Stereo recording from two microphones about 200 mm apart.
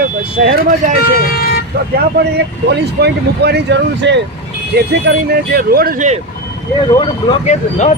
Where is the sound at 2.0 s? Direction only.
55° right (ahead or behind).